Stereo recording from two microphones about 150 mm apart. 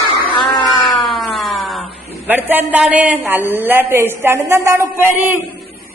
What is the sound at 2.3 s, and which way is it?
A woman's voice, 15° right (ahead or behind).